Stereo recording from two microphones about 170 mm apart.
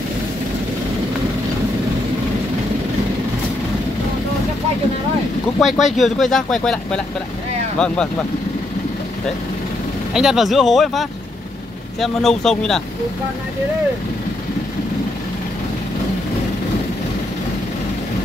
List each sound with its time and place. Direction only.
5.6 s speech: centre (ahead or behind)
10.1 s speech: centre (ahead or behind)